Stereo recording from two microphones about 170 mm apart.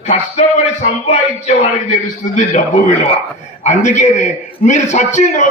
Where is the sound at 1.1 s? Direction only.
40° left (ahead or behind).